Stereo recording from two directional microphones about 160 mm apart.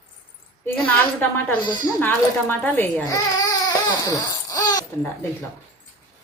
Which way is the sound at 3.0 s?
20° left (ahead or behind).